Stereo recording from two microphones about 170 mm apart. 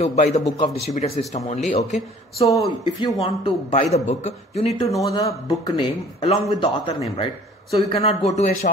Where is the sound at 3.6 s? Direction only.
40° left (ahead or behind).